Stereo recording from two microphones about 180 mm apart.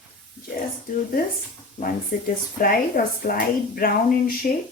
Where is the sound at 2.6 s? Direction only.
55° left (ahead or behind).